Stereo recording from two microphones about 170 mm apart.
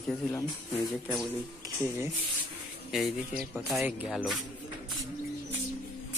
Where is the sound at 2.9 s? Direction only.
Centre (ahead or behind).